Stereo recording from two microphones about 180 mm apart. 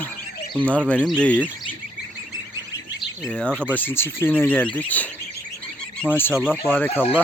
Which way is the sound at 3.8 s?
10° left (ahead or behind).